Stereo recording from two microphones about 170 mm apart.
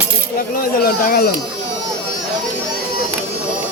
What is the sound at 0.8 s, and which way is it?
Speech, 60° left (ahead or behind).